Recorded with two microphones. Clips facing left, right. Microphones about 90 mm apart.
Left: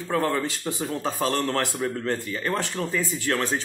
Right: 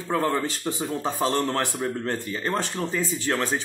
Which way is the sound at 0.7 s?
20° right (ahead or behind).